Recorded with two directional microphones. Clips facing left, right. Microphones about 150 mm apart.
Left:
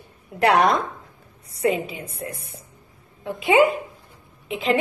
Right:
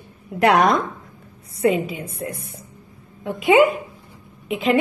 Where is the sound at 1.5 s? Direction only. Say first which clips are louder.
Right 3 dB; 30° right (ahead or behind).